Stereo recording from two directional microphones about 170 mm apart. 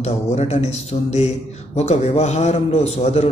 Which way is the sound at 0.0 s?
40° left (ahead or behind).